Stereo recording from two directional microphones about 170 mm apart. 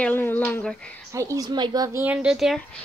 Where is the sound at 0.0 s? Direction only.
10° left (ahead or behind).